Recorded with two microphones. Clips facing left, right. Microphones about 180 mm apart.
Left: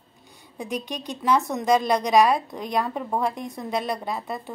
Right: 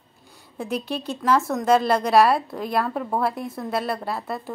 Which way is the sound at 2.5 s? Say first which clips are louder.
Right 2 dB; 5° right (ahead or behind).